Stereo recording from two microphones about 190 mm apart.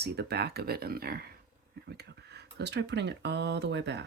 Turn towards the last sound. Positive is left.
turn(degrees=-65)  # may be behind; listen again after turning